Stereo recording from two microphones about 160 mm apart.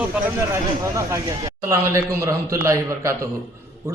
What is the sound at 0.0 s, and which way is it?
Speech, 10° right (ahead or behind).